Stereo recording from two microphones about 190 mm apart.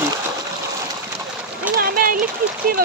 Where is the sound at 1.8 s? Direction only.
50° right (ahead or behind).